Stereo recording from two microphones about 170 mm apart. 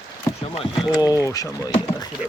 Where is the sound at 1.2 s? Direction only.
20° left (ahead or behind).